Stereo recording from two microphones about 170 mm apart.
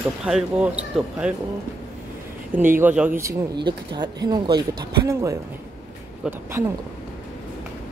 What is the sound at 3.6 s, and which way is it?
Speech, 25° right (ahead or behind).